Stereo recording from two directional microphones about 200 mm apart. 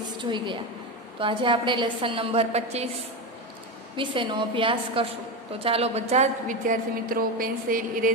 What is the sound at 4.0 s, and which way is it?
A woman's voice, 25° right (ahead or behind).